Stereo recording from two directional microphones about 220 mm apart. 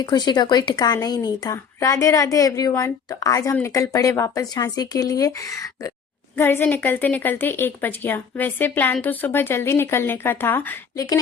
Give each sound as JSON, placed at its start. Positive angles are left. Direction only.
{"t": 0.0, "sound": "a woman's voice", "side_deg": 20}